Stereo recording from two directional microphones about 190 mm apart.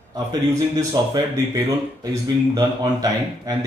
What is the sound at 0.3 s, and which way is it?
A man's voice, 20° right (ahead or behind).